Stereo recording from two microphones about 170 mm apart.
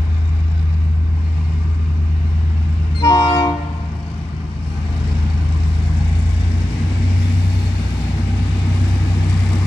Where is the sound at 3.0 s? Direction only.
30° left (ahead or behind).